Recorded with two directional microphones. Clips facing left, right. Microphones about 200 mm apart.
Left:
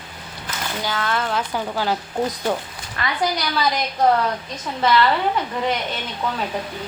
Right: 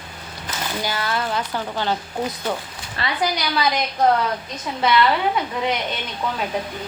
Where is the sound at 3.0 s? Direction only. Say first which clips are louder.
Even; 30° right (ahead or behind).